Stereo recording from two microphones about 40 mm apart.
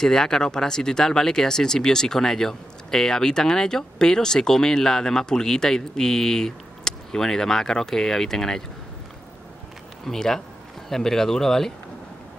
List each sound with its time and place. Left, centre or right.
0.0 s speech: centre
10.0 s speech: centre